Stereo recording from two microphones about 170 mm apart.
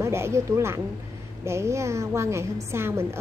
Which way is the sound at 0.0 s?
15° right (ahead or behind).